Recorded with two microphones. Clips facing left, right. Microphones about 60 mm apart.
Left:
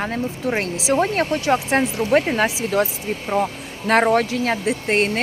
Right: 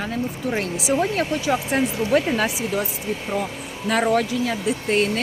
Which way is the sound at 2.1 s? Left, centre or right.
Left.